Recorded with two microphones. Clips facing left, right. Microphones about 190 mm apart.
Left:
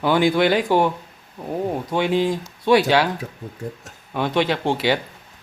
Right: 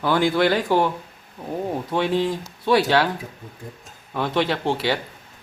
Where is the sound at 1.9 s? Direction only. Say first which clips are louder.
Left 2 dB; 10° left (ahead or behind).